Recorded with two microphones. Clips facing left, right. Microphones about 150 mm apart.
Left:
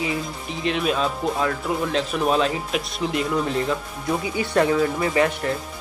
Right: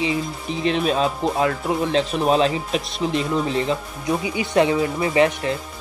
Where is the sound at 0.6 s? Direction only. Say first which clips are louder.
Right 3 dB; 35° right (ahead or behind).